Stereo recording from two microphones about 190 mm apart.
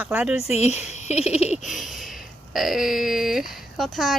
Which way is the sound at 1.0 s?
35° left (ahead or behind).